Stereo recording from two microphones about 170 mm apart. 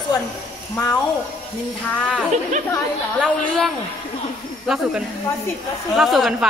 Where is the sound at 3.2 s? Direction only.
Centre (ahead or behind).